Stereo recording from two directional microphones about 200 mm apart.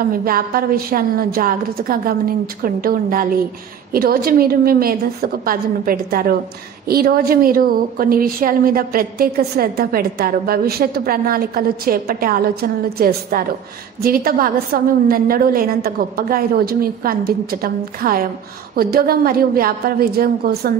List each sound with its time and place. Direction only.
0.1 s a woman's voice: 45° right (ahead or behind)